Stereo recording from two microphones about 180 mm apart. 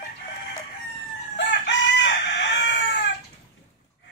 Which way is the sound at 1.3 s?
80° left.